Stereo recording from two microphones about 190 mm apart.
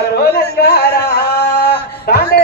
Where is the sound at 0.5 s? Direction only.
55° left (ahead or behind).